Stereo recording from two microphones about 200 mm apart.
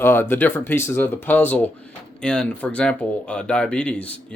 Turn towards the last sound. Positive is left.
turn(degrees=5)  # may be behind; listen again after turning